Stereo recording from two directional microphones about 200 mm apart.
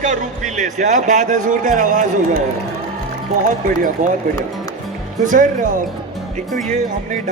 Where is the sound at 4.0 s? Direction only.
40° right (ahead or behind).